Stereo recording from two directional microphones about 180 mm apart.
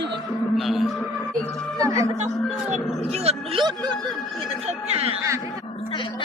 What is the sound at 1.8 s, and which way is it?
Speech, 20° right (ahead or behind).